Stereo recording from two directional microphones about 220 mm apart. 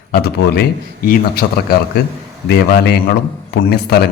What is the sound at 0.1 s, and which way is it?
A man's voice, 45° left (ahead or behind).